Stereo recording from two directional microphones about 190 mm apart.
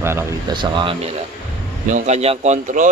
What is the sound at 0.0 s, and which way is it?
Speech, 15° right (ahead or behind).